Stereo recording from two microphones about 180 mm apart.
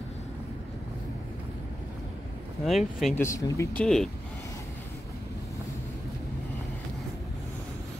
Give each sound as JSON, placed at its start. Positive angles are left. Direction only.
{"t": 2.6, "sound": "speech", "side_deg": 0}
{"t": 3.2, "sound": "speech", "side_deg": 15}
{"t": 3.8, "sound": "speech", "side_deg": 0}